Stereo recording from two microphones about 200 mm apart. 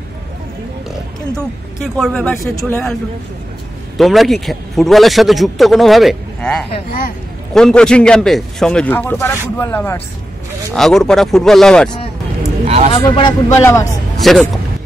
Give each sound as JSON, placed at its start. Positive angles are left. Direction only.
{"t": 2.0, "sound": "a man's voice", "side_deg": 5}
{"t": 4.0, "sound": "a man's voice", "side_deg": 0}
{"t": 12.6, "sound": "a sound", "side_deg": -30}
{"t": 12.9, "sound": "a man's voice", "side_deg": 25}
{"t": 14.2, "sound": "a man's voice", "side_deg": 0}